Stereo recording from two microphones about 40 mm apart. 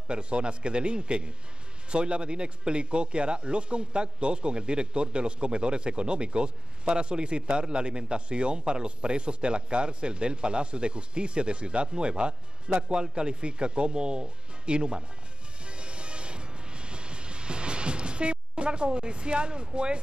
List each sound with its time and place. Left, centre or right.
0.1 s speech: right
15.6 s music: right
18.9 s speech: right